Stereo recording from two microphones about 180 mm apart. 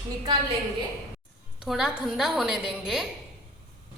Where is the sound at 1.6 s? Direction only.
5° right (ahead or behind).